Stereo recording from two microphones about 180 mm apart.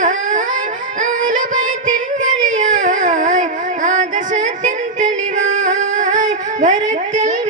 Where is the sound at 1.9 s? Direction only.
45° right (ahead or behind).